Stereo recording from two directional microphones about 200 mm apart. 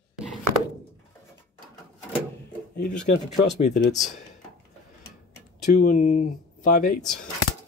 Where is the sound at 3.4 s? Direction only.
60° left (ahead or behind).